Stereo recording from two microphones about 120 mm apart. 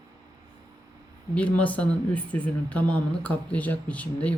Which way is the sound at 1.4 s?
10° left (ahead or behind).